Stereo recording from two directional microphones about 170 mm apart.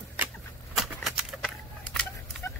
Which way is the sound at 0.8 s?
Centre (ahead or behind).